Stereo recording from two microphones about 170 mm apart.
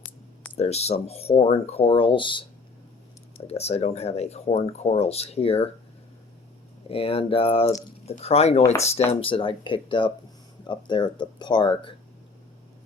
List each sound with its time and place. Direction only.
0.5 s speech: 40° left (ahead or behind)
3.4 s speech: 40° left (ahead or behind)
6.8 s speech: 35° left (ahead or behind)